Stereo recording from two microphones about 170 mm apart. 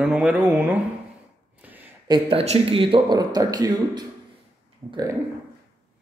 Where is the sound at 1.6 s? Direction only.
10° right (ahead or behind).